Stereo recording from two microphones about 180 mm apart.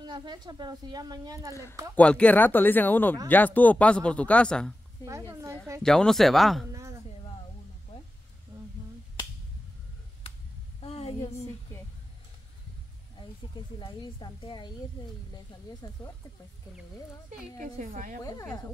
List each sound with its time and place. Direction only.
0.0 s a woman's voice: 25° right (ahead or behind)
1.5 s speech: 15° left (ahead or behind)
5.0 s a woman's voice: 20° left (ahead or behind)
5.8 s speech: 5° left (ahead or behind)
6.7 s a sound: 15° right (ahead or behind)
10.8 s a sound: 35° left (ahead or behind)
13.7 s a woman's voice: 25° left (ahead or behind)
15.8 s a woman's voice: 20° left (ahead or behind)
17.6 s a woman's voice: 45° right (ahead or behind)